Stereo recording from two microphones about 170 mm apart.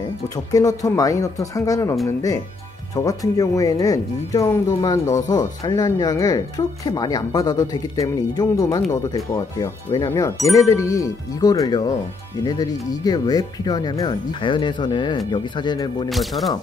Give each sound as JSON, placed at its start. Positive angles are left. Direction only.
{"t": 0.5, "sound": "speech", "side_deg": 20}
{"t": 16.1, "sound": "speech", "side_deg": 0}